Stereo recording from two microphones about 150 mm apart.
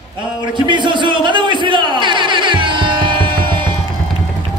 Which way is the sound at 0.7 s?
30° right (ahead or behind).